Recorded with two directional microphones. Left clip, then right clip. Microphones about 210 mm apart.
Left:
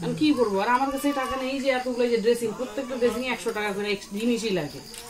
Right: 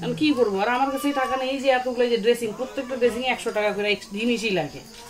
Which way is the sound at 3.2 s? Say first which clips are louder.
Right 4 dB; 25° right (ahead or behind).